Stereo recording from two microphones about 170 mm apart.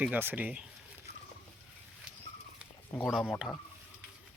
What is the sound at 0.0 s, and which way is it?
Speech, 10° right (ahead or behind).